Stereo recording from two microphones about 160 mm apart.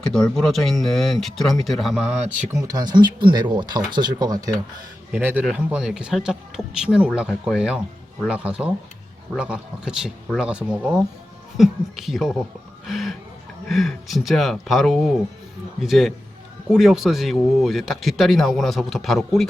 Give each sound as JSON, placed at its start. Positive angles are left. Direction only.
{"t": 0.1, "sound": "speech", "side_deg": 5}
{"t": 2.5, "sound": "speech", "side_deg": -20}
{"t": 5.1, "sound": "speech", "side_deg": -10}
{"t": 12.8, "sound": "a sound", "side_deg": 0}
{"t": 13.7, "sound": "speech", "side_deg": 0}